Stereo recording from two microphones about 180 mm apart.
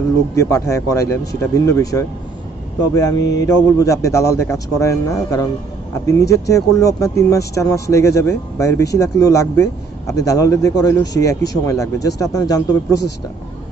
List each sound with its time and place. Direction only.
0.4 s a man's voice: 15° left (ahead or behind)